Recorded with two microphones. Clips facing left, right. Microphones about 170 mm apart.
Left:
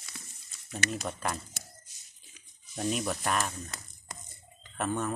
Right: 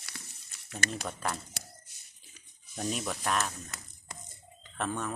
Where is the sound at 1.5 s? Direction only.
60° right (ahead or behind).